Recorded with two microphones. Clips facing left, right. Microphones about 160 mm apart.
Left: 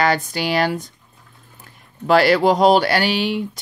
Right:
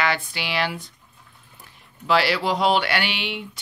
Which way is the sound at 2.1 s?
50° left (ahead or behind).